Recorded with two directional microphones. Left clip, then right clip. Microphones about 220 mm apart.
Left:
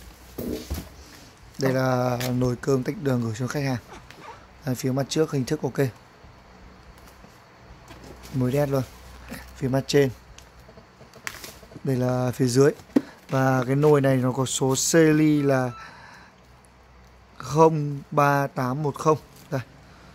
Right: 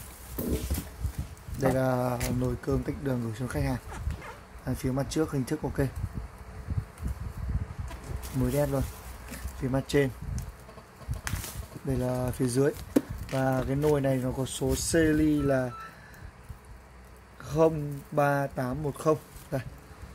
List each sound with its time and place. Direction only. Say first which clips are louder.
1.6 s speech: left 4 dB; 25° left (ahead or behind)
8.5 s speech: left 5 dB; 25° left (ahead or behind)
11.3 s bird: left 3 dB; 5° left (ahead or behind)
11.9 s speech: left 6 dB; 25° left (ahead or behind)
17.4 s speech: left 6 dB; 30° left (ahead or behind)